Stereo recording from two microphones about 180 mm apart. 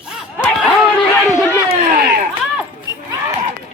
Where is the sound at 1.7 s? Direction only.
60° right (ahead or behind).